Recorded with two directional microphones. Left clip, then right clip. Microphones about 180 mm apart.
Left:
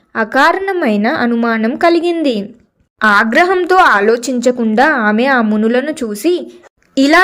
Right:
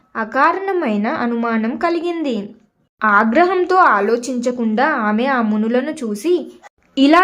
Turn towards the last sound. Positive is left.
turn(degrees=30)  # may be behind; listen again after turning